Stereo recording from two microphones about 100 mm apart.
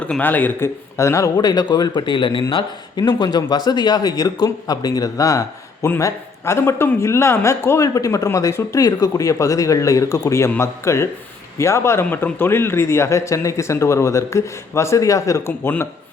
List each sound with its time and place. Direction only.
0.0 s speech: 15° left (ahead or behind)
0.9 s speech: 30° left (ahead or behind)
1.4 s speech: 45° left (ahead or behind)